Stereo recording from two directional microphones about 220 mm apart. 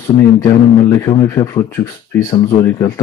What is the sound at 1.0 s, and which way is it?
Speech, 20° left (ahead or behind).